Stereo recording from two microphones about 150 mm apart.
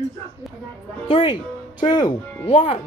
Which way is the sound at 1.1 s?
35° left (ahead or behind).